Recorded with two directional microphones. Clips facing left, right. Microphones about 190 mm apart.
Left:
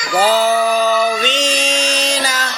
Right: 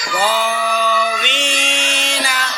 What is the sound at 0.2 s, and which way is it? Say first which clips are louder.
Mantra: left 5 dB; 40° left (ahead or behind).